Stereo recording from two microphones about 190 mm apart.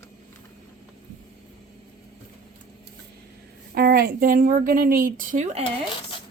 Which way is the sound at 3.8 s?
55° right (ahead or behind).